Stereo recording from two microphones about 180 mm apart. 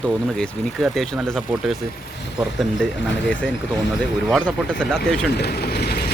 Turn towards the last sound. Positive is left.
turn(degrees=60)  # may be behind; listen again after turning